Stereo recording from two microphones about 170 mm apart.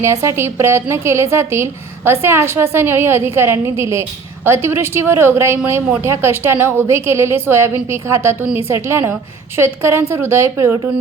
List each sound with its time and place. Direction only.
0.0 s speech: 15° right (ahead or behind)